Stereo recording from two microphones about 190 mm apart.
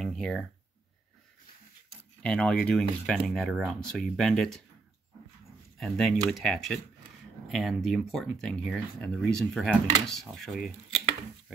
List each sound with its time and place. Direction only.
0.0 s a sound: 5° left (ahead or behind)
2.2 s speech: 5° left (ahead or behind)
5.8 s speech: centre (ahead or behind)